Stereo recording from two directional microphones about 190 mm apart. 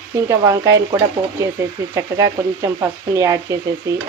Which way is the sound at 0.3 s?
15° right (ahead or behind).